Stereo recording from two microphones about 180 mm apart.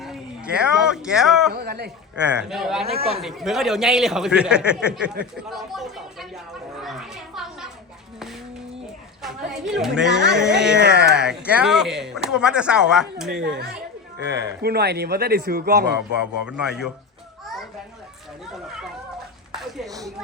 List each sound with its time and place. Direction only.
0.0 s a man's voice: 5° right (ahead or behind)
1.5 s speech: 65° right (ahead or behind)
2.4 s speech: centre (ahead or behind)
2.8 s a man's voice: 35° right (ahead or behind)
3.2 s speech: centre (ahead or behind)
9.2 s speech: centre (ahead or behind)
13.4 s speech: 65° right (ahead or behind)
16.2 s speech: 5° right (ahead or behind)
18.5 s children playing: centre (ahead or behind)
19.5 s a sound: centre (ahead or behind)